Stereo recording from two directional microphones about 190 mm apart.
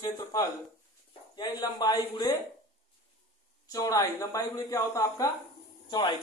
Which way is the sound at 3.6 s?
20° left (ahead or behind).